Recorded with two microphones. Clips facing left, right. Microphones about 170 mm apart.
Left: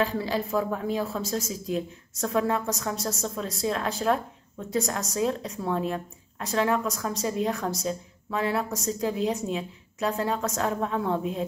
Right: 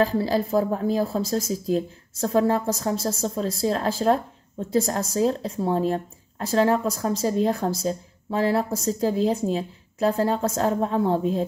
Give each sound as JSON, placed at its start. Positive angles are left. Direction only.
{"t": 0.0, "sound": "speech", "side_deg": -35}